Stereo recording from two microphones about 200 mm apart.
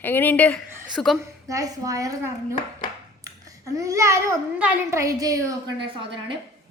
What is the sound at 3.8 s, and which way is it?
A child's voice, 15° right (ahead or behind).